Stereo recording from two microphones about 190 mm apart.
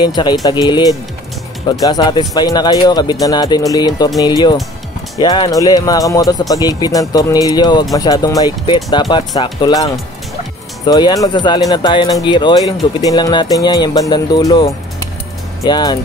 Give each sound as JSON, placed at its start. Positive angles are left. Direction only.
{"t": 0.0, "sound": "speech", "side_deg": 25}
{"t": 5.2, "sound": "speech", "side_deg": 20}
{"t": 10.9, "sound": "speech", "side_deg": 20}